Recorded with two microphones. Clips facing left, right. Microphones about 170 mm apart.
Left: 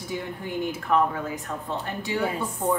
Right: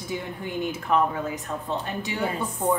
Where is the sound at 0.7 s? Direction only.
20° right (ahead or behind).